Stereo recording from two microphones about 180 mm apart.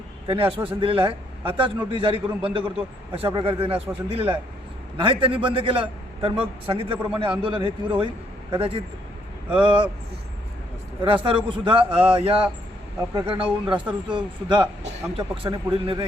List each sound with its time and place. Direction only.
0.3 s a man's voice: 30° right (ahead or behind)
11.0 s a man's voice: 30° right (ahead or behind)